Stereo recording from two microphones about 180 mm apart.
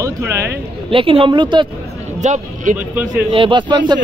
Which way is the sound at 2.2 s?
45° right (ahead or behind).